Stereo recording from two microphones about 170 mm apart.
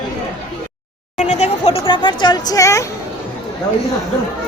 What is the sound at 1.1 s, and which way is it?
Speech, 45° left (ahead or behind).